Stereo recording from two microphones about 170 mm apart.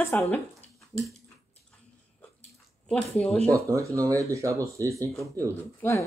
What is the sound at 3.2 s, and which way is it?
Speech, 10° left (ahead or behind).